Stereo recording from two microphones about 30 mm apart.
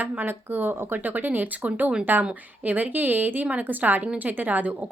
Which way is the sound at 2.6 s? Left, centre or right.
Right.